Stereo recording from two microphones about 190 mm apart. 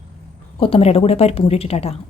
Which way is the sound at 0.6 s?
30° left (ahead or behind).